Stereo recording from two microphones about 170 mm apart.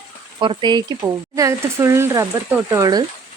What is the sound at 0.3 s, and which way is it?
Speech, 25° right (ahead or behind).